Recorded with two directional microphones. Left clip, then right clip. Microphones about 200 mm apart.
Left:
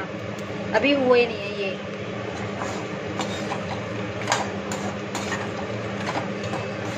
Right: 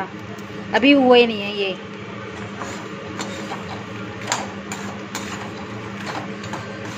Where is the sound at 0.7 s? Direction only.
50° right (ahead or behind).